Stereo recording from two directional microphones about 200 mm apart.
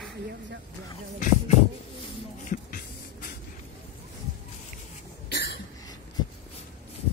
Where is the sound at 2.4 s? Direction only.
40° left (ahead or behind).